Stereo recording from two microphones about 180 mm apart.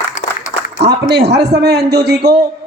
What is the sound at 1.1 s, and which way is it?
A man's voice, 70° right (ahead or behind).